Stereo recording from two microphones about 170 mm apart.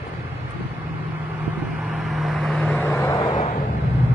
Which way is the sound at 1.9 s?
Centre (ahead or behind).